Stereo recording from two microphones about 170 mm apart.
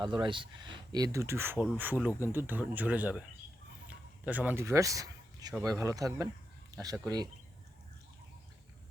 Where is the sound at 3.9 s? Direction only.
10° right (ahead or behind).